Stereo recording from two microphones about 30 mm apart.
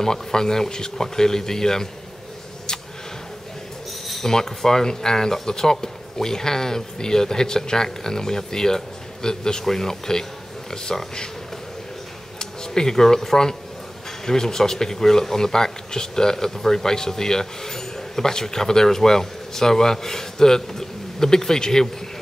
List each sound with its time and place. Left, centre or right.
0.0 s speech: centre
4.2 s speech: centre
12.4 s speech: left